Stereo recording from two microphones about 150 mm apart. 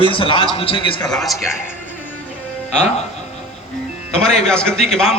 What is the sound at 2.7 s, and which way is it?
Speech, 50° left (ahead or behind).